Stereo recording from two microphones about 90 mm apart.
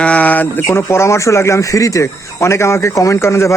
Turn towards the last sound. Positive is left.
turn(degrees=30)  # may be behind; listen again after turning